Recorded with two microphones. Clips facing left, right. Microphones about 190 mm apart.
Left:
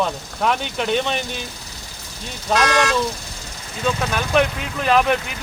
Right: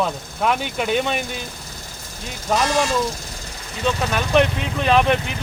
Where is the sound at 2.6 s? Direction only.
85° left.